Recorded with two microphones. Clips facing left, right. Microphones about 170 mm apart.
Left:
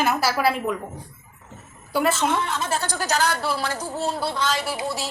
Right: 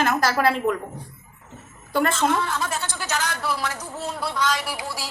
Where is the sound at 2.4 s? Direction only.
25° left (ahead or behind).